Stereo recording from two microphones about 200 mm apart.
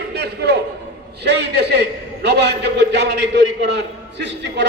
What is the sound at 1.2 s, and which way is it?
A man's voice, 60° right (ahead or behind).